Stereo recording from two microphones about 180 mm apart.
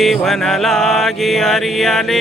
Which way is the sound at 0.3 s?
Centre (ahead or behind).